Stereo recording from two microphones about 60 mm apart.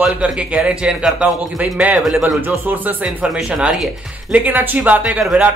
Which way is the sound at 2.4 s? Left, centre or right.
Right.